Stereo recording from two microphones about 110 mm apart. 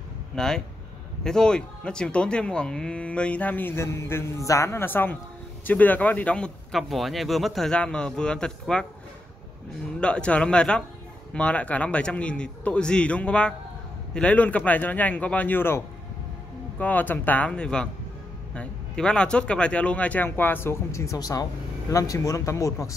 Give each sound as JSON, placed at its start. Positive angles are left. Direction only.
{"t": 0.4, "sound": "speech", "side_deg": 5}
{"t": 9.9, "sound": "speech", "side_deg": 10}